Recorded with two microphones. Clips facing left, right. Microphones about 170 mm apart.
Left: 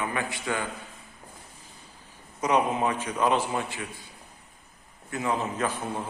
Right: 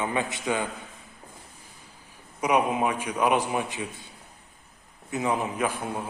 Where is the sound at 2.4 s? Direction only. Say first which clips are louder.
Right 1 dB; 10° right (ahead or behind).